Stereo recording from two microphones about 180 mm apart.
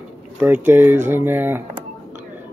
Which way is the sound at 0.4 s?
10° right (ahead or behind).